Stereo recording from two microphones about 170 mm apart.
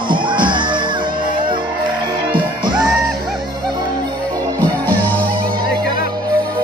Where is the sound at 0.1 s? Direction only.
30° right (ahead or behind).